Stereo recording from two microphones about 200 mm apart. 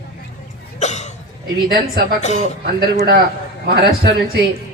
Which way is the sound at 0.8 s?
35° left (ahead or behind).